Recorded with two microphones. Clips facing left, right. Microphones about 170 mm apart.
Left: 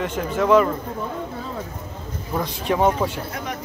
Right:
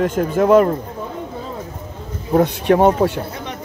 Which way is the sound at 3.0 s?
40° right (ahead or behind).